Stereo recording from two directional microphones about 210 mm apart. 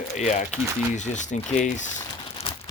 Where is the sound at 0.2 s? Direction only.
35° left (ahead or behind).